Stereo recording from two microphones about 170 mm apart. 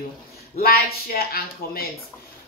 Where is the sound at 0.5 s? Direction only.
60° left (ahead or behind).